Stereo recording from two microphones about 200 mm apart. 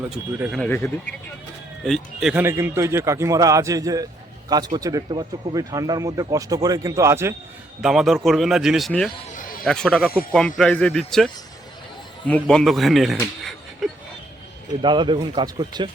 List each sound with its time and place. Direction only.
0.3 s speech: 5° right (ahead or behind)
0.6 s speech: 10° left (ahead or behind)
1.8 s speech: centre (ahead or behind)
7.8 s a man's voice: centre (ahead or behind)
9.3 s a sound: 45° left (ahead or behind)
9.6 s a man's voice: 5° left (ahead or behind)
12.3 s a man's voice: 5° left (ahead or behind)
13.4 s a sound: centre (ahead or behind)
14.8 s speech: 25° right (ahead or behind)